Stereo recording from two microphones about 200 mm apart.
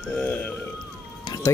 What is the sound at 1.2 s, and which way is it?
Music, 15° left (ahead or behind).